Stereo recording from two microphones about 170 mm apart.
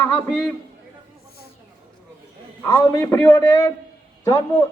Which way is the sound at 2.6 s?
15° left (ahead or behind).